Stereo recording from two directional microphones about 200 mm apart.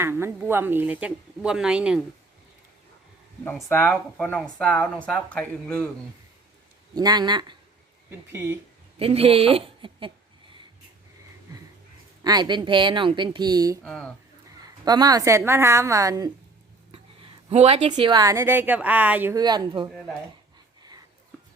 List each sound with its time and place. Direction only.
0.0 s speech: 10° right (ahead or behind)
3.4 s speech: 10° left (ahead or behind)
6.9 s speech: 20° right (ahead or behind)
9.0 s speech: 30° right (ahead or behind)
12.2 s speech: 20° right (ahead or behind)
13.8 s speech: centre (ahead or behind)
14.6 s speech: 20° right (ahead or behind)
16.9 s a woman's voice: 25° right (ahead or behind)